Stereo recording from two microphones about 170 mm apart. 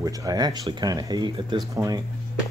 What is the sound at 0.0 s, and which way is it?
Speech, 20° right (ahead or behind).